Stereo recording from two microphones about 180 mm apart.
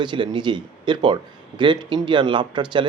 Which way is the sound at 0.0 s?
25° right (ahead or behind).